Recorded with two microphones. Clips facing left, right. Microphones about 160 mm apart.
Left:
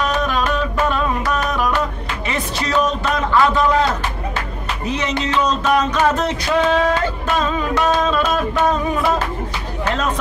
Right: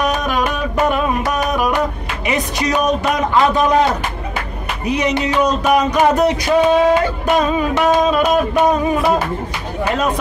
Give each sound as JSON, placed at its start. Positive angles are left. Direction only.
{"t": 0.0, "sound": "music", "side_deg": -15}